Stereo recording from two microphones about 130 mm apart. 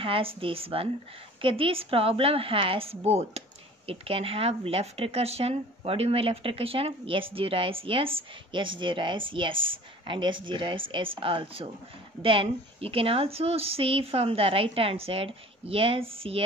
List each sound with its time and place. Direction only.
0.0 s a woman's voice: 45° right (ahead or behind)